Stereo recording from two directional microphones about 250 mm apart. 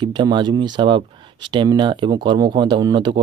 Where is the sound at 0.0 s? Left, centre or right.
Centre.